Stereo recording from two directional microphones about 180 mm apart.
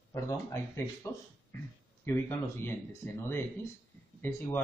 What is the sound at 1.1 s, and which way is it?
Speech, 15° left (ahead or behind).